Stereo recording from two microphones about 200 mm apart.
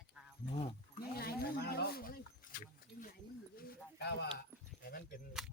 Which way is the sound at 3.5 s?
50° left (ahead or behind).